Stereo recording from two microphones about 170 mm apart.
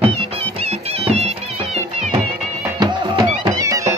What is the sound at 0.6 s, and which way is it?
Music, 40° right (ahead or behind).